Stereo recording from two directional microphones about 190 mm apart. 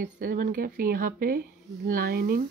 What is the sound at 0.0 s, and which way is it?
Speech, 45° right (ahead or behind).